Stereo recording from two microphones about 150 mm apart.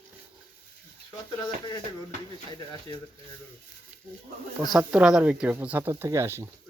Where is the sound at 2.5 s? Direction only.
30° left (ahead or behind).